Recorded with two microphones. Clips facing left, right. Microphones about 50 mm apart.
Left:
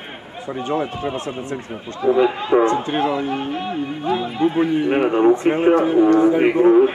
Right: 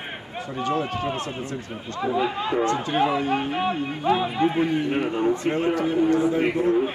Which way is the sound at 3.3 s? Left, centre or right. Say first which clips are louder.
Even; centre.